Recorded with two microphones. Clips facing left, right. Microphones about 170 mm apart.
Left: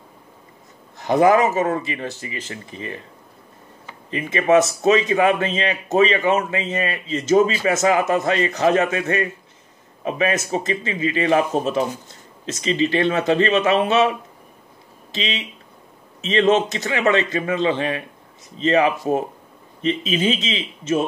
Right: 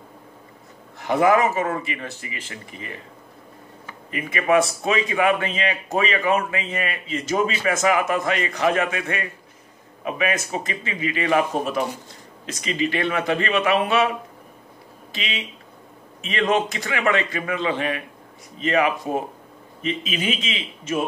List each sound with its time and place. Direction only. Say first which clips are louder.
0.9 s speech: left 3 dB; 35° left (ahead or behind)
4.1 s speech: left 3 dB; 30° left (ahead or behind)
15.1 s speech: left 4 dB; 30° left (ahead or behind)